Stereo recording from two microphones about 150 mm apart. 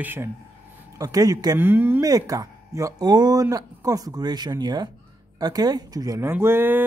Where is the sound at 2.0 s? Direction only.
25° right (ahead or behind).